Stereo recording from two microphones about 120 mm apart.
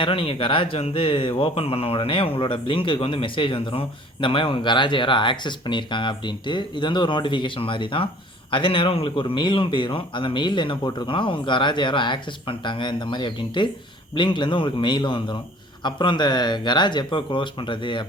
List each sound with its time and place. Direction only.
0.0 s speech: 50° left (ahead or behind)